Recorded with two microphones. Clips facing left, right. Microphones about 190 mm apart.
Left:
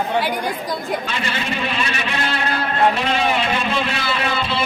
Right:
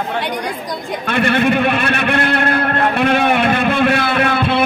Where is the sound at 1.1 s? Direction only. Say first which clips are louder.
Right 10 dB; 60° right (ahead or behind).